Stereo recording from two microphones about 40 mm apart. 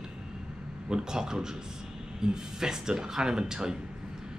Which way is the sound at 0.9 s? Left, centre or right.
Centre.